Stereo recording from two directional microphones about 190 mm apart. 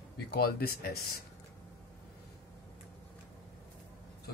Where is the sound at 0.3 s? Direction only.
55° left (ahead or behind).